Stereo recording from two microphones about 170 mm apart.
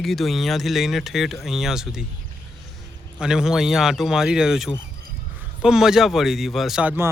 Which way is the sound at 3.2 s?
5° right (ahead or behind).